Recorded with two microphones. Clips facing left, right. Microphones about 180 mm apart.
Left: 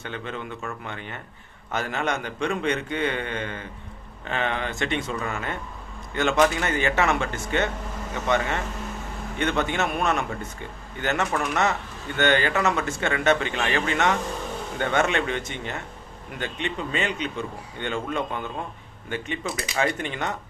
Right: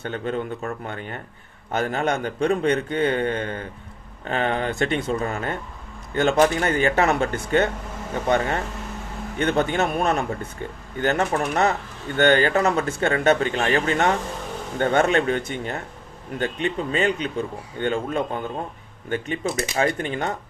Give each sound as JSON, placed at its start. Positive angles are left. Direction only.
{"t": 0.0, "sound": "speech", "side_deg": -40}
{"t": 7.3, "sound": "speech", "side_deg": -60}
{"t": 8.1, "sound": "speech", "side_deg": -35}
{"t": 19.1, "sound": "speech", "side_deg": -45}